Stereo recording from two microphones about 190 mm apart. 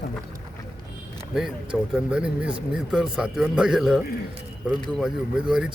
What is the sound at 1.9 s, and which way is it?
Speech, 5° right (ahead or behind).